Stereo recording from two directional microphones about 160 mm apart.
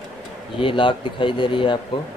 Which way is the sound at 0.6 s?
30° left (ahead or behind).